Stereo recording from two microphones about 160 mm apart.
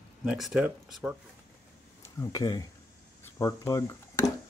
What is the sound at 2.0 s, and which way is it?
Speech, 20° left (ahead or behind).